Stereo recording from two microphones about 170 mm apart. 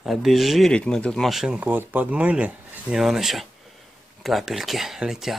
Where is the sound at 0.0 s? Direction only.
Centre (ahead or behind).